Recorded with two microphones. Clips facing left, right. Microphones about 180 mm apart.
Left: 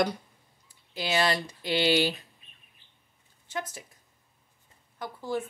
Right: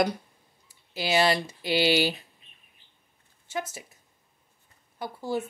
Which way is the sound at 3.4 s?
10° right (ahead or behind).